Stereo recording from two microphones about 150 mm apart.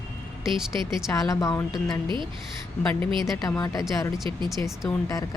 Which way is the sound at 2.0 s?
30° right (ahead or behind).